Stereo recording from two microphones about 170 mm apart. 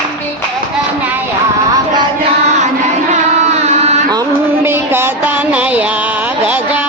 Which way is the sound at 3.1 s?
40° right (ahead or behind).